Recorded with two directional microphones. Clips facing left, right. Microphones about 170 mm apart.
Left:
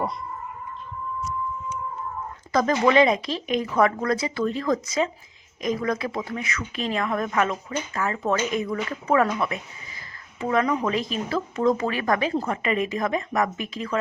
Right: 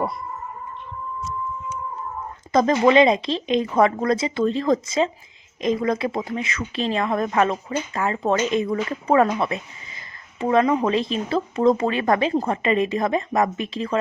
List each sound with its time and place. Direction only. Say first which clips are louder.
2.5 s speech: right 3 dB; 25° right (ahead or behind)